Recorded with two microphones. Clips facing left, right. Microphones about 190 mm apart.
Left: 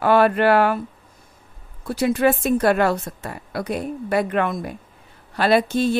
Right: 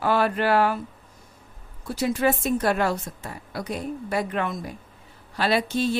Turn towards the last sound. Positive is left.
turn(degrees=50)  # may be behind; listen again after turning